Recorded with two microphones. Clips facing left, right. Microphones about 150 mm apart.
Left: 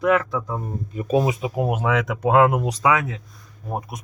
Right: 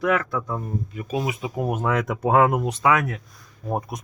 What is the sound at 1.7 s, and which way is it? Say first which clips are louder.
Speech: left 1 dB; 5° left (ahead or behind).